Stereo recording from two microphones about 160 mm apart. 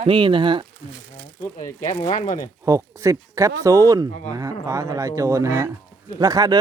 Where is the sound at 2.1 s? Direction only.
55° left (ahead or behind).